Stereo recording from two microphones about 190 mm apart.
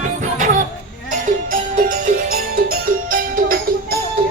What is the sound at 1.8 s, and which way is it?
Music, 45° right (ahead or behind).